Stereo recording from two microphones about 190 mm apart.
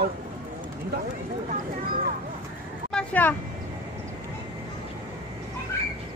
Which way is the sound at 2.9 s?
10° left (ahead or behind).